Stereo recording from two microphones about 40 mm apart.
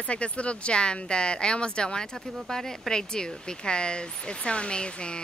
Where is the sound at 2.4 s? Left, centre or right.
Centre.